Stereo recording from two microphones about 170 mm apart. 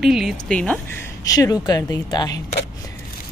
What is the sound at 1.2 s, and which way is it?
Speech, 20° left (ahead or behind).